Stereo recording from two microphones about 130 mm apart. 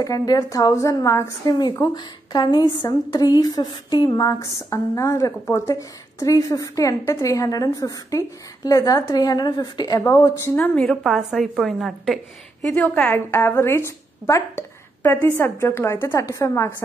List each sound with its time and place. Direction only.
0.0 s a woman's voice: 30° left (ahead or behind)
10.5 s a woman's voice: 5° left (ahead or behind)
12.7 s a woman's voice: 10° left (ahead or behind)